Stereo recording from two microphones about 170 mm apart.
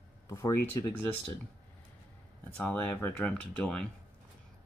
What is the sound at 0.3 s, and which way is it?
Speech, 15° left (ahead or behind).